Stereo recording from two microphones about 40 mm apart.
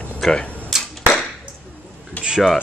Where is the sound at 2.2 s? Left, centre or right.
Left.